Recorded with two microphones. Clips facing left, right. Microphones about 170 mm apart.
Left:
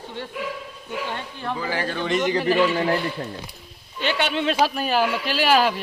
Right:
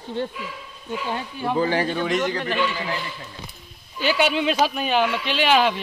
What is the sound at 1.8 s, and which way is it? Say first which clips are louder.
Speech: right 3 dB; 15° right (ahead or behind).